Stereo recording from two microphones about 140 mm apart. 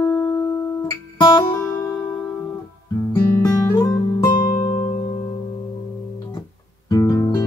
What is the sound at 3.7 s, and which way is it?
Music, 20° left (ahead or behind).